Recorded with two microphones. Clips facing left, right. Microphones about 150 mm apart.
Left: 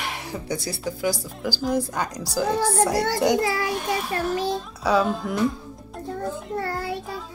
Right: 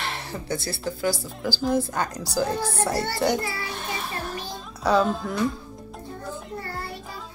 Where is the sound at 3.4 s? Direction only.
90° left.